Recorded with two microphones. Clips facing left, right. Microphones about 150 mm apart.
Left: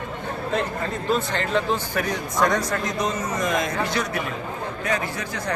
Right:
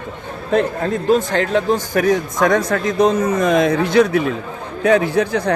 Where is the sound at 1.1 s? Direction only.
45° right (ahead or behind).